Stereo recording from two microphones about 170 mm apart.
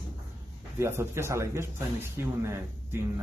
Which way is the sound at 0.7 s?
15° right (ahead or behind).